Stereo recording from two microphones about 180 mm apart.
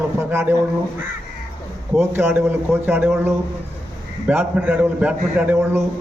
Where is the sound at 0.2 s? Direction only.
15° right (ahead or behind).